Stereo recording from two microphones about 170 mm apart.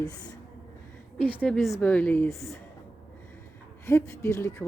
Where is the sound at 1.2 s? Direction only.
10° left (ahead or behind).